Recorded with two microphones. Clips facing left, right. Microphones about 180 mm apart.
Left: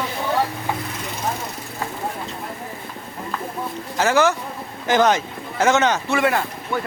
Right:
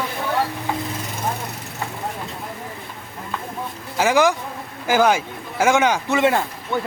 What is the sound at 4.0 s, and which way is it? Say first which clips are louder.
Speech: right 1 dB; 15° right (ahead or behind).